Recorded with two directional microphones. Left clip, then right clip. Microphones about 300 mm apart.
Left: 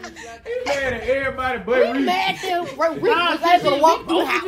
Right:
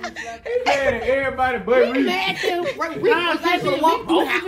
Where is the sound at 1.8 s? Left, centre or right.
Left.